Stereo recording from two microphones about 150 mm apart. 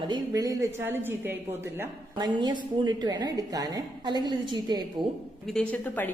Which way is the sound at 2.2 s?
25° right (ahead or behind).